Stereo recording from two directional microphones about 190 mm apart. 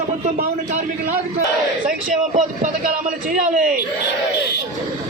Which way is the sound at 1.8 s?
40° right (ahead or behind).